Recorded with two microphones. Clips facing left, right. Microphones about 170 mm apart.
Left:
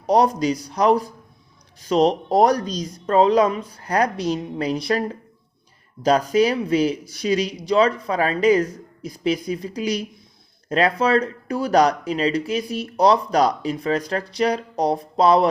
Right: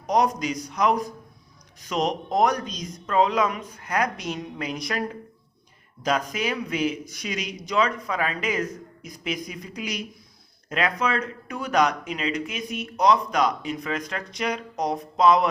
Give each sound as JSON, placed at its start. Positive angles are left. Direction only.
{"t": 0.0, "sound": "speech", "side_deg": 30}